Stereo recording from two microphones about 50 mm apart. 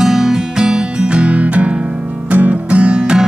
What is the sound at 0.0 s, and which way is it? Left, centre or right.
Music, centre.